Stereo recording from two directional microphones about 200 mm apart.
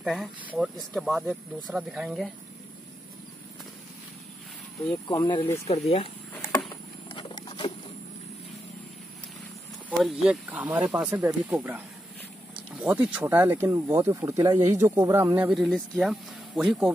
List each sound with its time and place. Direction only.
0.0 s speech: centre (ahead or behind)
5.0 s speech: 20° left (ahead or behind)
6.3 s a sound: 10° left (ahead or behind)
7.1 s pig: 25° left (ahead or behind)
9.8 s speech: centre (ahead or behind)
15.5 s speech: centre (ahead or behind)